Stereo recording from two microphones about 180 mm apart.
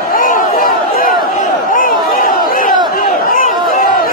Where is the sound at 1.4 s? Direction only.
50° left (ahead or behind).